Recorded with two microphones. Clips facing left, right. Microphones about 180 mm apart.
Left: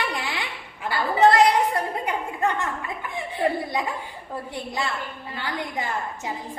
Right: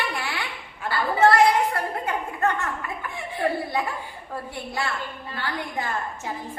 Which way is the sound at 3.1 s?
20° left (ahead or behind).